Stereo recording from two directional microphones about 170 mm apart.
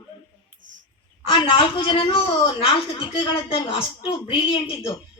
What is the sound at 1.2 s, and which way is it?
A woman's voice, 30° left (ahead or behind).